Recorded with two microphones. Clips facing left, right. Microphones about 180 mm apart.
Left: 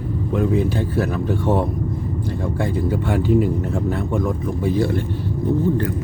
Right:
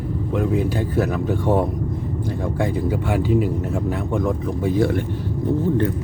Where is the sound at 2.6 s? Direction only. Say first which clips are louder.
Even; 15° right (ahead or behind).